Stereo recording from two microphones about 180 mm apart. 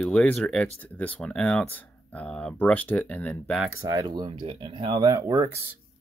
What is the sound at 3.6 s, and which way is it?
Speech, 15° right (ahead or behind).